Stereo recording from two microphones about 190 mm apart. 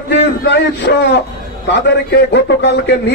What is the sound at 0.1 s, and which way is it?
A man's voice, 65° left (ahead or behind).